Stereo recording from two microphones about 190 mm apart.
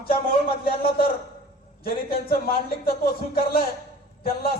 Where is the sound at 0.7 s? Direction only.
30° left (ahead or behind).